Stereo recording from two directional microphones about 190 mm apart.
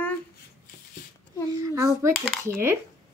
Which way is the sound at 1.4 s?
15° right (ahead or behind).